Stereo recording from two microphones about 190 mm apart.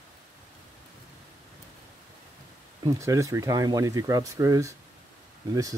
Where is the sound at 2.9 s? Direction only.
15° right (ahead or behind).